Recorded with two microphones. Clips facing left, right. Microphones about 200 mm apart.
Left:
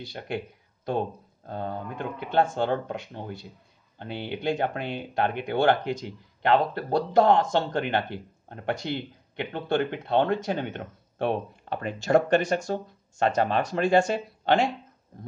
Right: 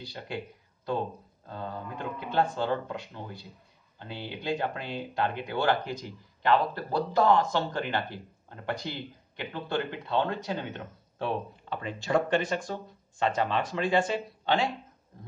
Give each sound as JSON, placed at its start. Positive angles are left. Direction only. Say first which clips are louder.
{"t": 0.8, "sound": "speech", "louder": "left 3 dB", "side_deg": 60}